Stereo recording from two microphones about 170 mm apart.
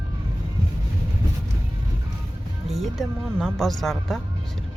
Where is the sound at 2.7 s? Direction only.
Centre (ahead or behind).